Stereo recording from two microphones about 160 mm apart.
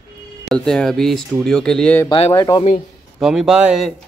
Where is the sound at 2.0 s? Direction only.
30° left (ahead or behind).